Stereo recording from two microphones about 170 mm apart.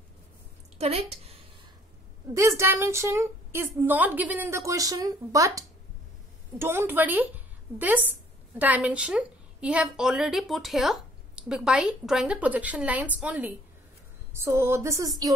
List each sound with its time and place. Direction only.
0.7 s a woman's voice: 40° right (ahead or behind)
2.3 s a woman's voice: 15° right (ahead or behind)